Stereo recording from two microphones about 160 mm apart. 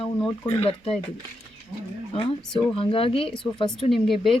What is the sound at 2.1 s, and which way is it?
Speech, 35° left (ahead or behind).